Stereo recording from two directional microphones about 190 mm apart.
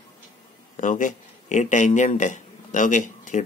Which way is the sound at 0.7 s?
40° left (ahead or behind).